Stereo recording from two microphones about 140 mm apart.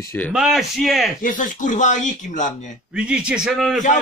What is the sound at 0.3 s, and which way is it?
Speech, 5° right (ahead or behind).